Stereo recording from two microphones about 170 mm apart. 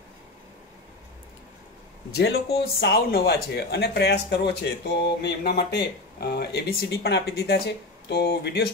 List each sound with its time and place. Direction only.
2.1 s speech: 70° left (ahead or behind)